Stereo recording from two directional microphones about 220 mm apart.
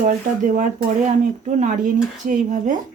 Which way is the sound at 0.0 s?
35° right (ahead or behind).